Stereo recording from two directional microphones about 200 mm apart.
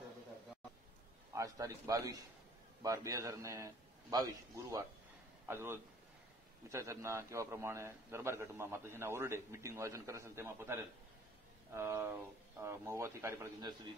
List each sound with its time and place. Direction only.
1.3 s a man's voice: 15° right (ahead or behind)